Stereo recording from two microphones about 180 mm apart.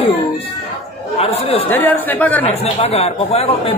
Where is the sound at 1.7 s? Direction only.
10° left (ahead or behind).